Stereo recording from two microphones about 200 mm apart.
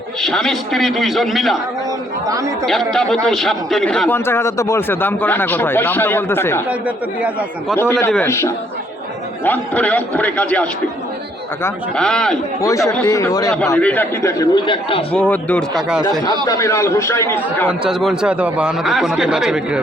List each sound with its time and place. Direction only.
0.2 s a man's voice: centre (ahead or behind)
2.2 s speech: 15° right (ahead or behind)
2.6 s a man's voice: centre (ahead or behind)
6.7 s speech: 5° right (ahead or behind)
7.8 s a man's voice: 10° left (ahead or behind)
12.6 s a man's voice: 15° left (ahead or behind)
15.1 s a man's voice: 5° left (ahead or behind)
16.5 s a man's voice: 15° left (ahead or behind)
17.7 s a man's voice: 5° right (ahead or behind)